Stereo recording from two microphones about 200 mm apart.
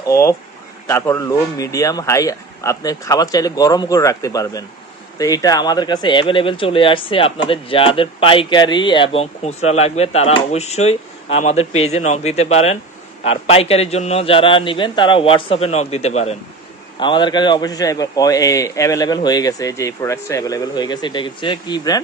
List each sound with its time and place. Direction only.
0.1 s speech: 15° left (ahead or behind)